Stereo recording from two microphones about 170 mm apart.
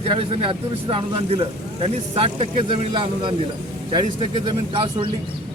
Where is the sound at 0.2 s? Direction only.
30° right (ahead or behind).